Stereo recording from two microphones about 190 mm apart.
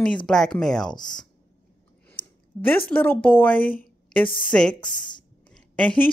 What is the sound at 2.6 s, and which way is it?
Speech, 10° left (ahead or behind).